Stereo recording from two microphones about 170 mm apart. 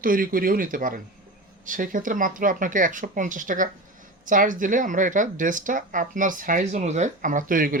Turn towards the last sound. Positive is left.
turn(degrees=-55)  # may be behind; listen again after turning